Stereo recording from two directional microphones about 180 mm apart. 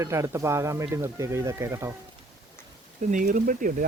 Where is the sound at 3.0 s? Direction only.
45° right (ahead or behind).